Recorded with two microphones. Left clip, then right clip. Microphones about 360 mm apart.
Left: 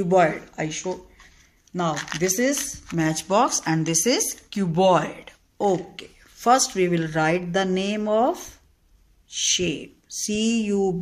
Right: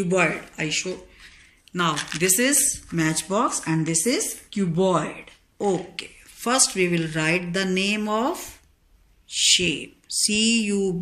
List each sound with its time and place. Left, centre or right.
0.0 s speech: left